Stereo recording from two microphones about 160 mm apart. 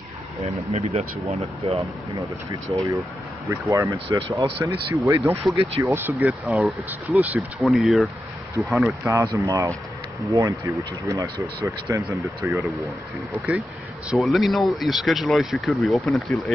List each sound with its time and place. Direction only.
0.7 s speech: 40° right (ahead or behind)
1.8 s speech: 20° right (ahead or behind)
6.4 s speech: centre (ahead or behind)
9.0 s speech: 20° right (ahead or behind)
14.1 s speech: centre (ahead or behind)